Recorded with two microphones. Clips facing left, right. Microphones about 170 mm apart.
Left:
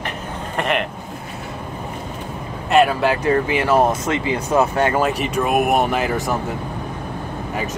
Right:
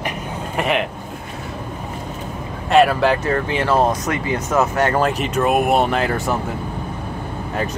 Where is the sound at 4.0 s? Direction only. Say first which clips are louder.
Left 1 dB; 25° left (ahead or behind).